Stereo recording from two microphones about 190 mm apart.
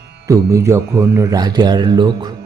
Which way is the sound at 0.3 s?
15° right (ahead or behind).